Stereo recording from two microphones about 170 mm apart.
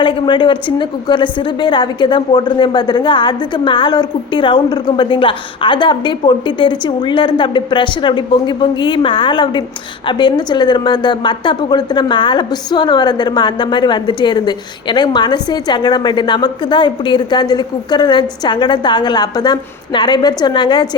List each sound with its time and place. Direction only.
0.0 s a woman's voice: 25° left (ahead or behind)